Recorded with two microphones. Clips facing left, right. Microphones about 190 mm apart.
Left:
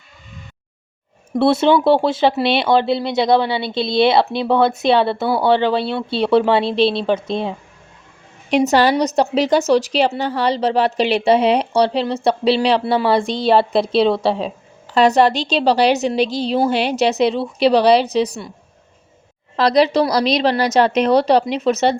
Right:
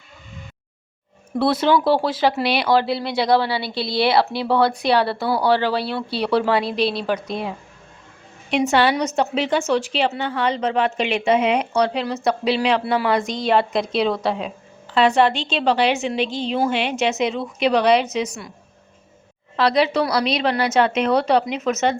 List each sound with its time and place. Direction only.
1.4 s speech: 25° left (ahead or behind)
8.4 s a woman's voice: 40° left (ahead or behind)
14.9 s a woman's voice: 40° left (ahead or behind)
19.5 s a woman's voice: 40° left (ahead or behind)